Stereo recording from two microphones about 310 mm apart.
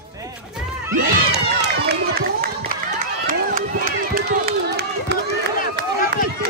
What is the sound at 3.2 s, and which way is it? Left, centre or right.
Run, right.